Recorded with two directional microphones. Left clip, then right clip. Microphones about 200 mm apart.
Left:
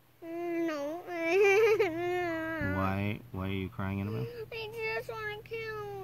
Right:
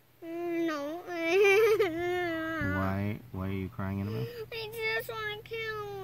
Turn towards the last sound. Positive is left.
turn(degrees=-50)  # may be behind; listen again after turning